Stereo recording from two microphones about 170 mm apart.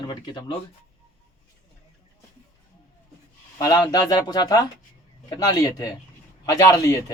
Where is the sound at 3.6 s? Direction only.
20° left (ahead or behind).